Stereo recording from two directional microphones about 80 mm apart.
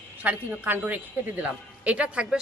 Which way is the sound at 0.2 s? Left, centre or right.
Right.